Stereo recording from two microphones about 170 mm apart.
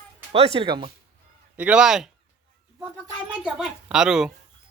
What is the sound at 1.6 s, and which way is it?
Speech, 5° right (ahead or behind).